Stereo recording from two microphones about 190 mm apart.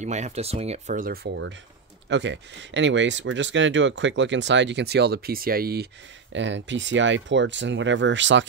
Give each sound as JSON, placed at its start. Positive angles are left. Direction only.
{"t": 0.0, "sound": "speech", "side_deg": -35}
{"t": 2.0, "sound": "speech", "side_deg": -70}
{"t": 6.3, "sound": "speech", "side_deg": -75}